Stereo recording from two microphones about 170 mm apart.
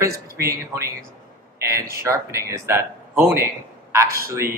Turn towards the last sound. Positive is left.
turn(degrees=-15)  # may be behind; listen again after turning